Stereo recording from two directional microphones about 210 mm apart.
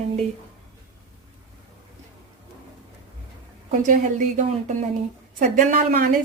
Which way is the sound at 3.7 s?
40° right (ahead or behind).